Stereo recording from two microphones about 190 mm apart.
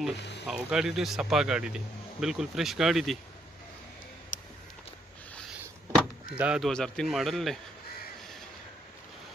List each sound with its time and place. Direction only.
0.2 s speech: 65° left (ahead or behind)
0.5 s speech: 5° right (ahead or behind)
4.3 s a sound: 40° left (ahead or behind)
5.9 s speech: 5° right (ahead or behind)